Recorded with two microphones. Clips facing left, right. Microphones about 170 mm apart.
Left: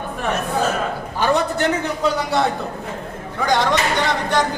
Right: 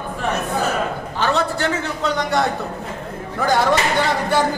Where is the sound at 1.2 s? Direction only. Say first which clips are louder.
Left 2 dB; 15° left (ahead or behind).